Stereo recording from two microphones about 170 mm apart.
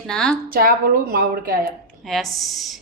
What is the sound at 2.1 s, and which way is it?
Speech, centre (ahead or behind).